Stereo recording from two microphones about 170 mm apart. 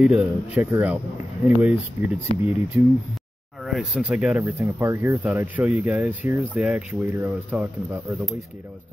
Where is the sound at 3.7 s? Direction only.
5° right (ahead or behind).